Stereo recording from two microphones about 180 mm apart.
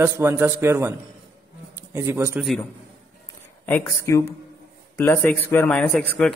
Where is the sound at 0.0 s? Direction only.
10° right (ahead or behind).